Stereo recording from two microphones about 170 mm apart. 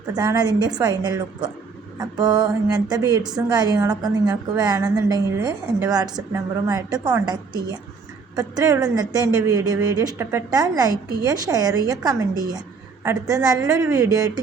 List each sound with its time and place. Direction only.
0.1 s a woman's voice: 25° right (ahead or behind)